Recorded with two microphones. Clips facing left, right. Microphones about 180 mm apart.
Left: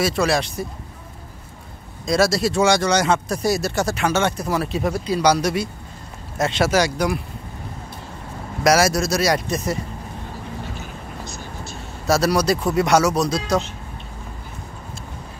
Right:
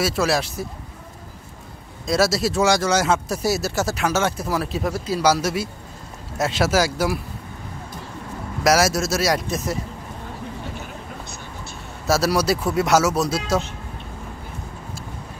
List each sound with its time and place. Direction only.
0.0 s speech: 5° right (ahead or behind)
2.0 s speech: 5° right (ahead or behind)
8.6 s speech: centre (ahead or behind)
11.2 s vehicle: 60° right (ahead or behind)
12.1 s speech: 5° right (ahead or behind)